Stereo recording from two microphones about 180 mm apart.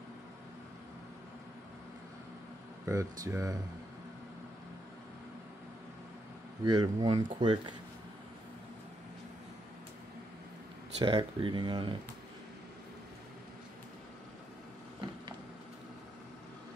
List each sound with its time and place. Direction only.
2.8 s speech: 15° right (ahead or behind)
6.6 s speech: 20° right (ahead or behind)
11.0 s speech: 25° right (ahead or behind)